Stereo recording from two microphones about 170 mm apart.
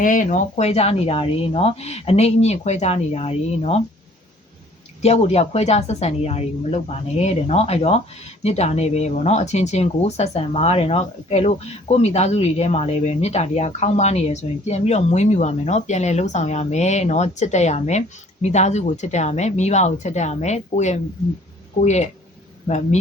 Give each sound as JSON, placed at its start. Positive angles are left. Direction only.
{"t": 0.0, "sound": "speech", "side_deg": 50}
{"t": 5.0, "sound": "speech", "side_deg": 40}